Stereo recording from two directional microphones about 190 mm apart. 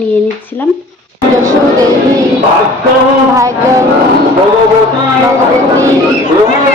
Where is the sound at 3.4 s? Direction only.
15° right (ahead or behind).